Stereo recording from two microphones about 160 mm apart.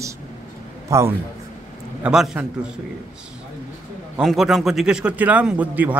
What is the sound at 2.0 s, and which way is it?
Speech, 5° right (ahead or behind).